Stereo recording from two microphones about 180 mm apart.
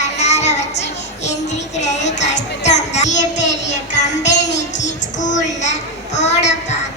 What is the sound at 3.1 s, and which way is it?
Child singing, 80° left.